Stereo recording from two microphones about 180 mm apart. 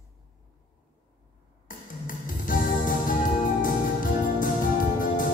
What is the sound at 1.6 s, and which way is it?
Music, 50° left (ahead or behind).